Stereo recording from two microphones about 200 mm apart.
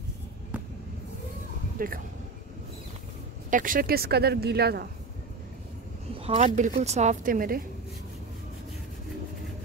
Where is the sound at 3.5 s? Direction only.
40° right (ahead or behind).